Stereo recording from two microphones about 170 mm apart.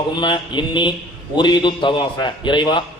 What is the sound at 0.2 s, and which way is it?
A man's voice, 25° left (ahead or behind).